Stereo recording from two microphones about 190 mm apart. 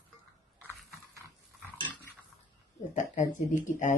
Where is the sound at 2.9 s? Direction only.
40° left (ahead or behind).